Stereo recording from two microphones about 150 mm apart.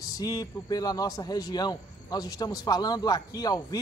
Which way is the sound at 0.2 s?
25° left (ahead or behind).